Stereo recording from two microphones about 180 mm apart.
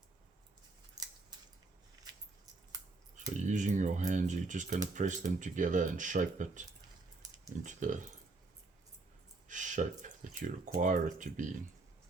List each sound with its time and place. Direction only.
1.0 s scissors: 20° right (ahead or behind)
3.4 s speech: 45° right (ahead or behind)
7.6 s speech: 45° right (ahead or behind)
9.5 s speech: 45° right (ahead or behind)